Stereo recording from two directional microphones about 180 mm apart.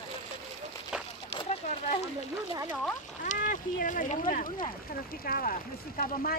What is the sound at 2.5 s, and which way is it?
Speech, 20° right (ahead or behind).